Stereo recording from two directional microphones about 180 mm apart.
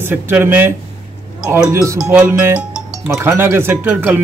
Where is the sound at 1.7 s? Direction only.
15° right (ahead or behind).